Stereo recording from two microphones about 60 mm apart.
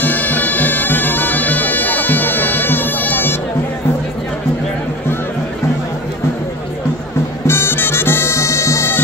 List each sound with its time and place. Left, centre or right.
0.0 s bagpipes: left
7.4 s music: left